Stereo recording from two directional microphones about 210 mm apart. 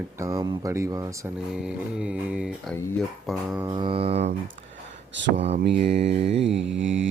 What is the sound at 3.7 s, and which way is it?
Mantra, 25° right (ahead or behind).